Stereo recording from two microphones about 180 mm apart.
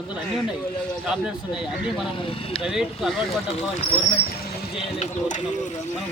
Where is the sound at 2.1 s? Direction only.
30° left (ahead or behind).